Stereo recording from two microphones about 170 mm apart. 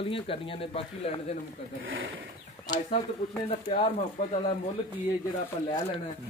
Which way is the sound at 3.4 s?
35° left (ahead or behind).